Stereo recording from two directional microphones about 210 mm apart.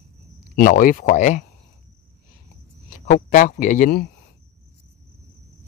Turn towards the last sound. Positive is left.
turn(degrees=45)  # may be behind; listen again after turning